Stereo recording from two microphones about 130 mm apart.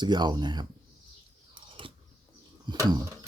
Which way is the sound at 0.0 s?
35° right (ahead or behind).